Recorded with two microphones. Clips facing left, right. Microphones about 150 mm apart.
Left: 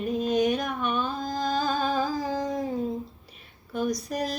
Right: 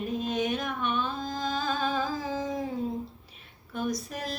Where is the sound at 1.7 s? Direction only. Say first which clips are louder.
Left 3 dB; 40° left (ahead or behind).